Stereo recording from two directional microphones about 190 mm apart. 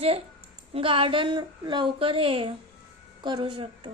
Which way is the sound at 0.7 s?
30° right (ahead or behind).